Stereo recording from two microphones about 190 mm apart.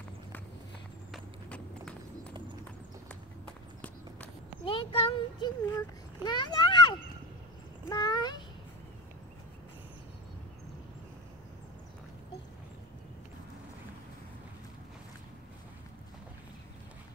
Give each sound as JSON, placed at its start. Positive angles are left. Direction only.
{"t": 1.1, "sound": "clip-clop", "side_deg": 5}
{"t": 4.6, "sound": "a child's voice", "side_deg": 30}
{"t": 7.9, "sound": "a sound", "side_deg": 20}